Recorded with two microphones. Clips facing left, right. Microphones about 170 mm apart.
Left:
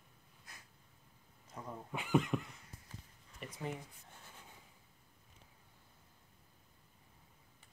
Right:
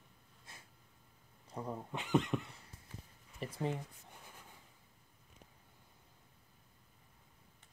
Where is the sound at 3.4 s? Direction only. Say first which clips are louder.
Right 5 dB; 30° right (ahead or behind).